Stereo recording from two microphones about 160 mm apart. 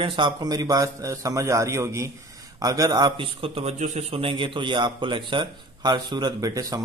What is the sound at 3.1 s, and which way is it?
A man's voice, 35° right (ahead or behind).